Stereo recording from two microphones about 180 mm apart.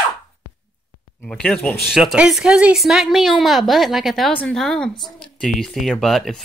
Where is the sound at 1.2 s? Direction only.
5° left (ahead or behind).